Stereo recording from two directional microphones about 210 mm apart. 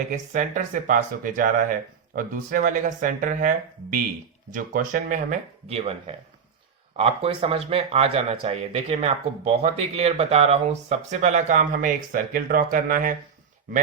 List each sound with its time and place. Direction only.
0.1 s speech: 40° right (ahead or behind)